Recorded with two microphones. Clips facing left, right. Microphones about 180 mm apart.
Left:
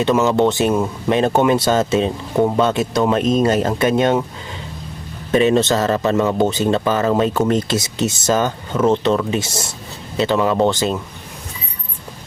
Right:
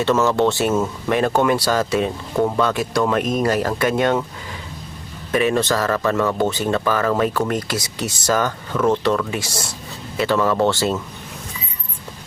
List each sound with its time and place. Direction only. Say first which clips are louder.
0.0 s speech: left 2 dB; 15° left (ahead or behind)
5.3 s speech: left 4 dB; 25° left (ahead or behind)